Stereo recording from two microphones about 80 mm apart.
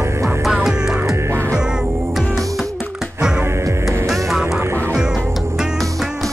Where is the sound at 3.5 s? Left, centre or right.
Right.